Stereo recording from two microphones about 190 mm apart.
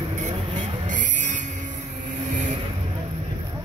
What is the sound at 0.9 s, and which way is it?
Music, 40° right (ahead or behind).